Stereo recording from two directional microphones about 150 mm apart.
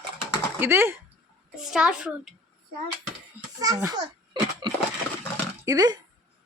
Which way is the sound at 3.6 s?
25° right (ahead or behind).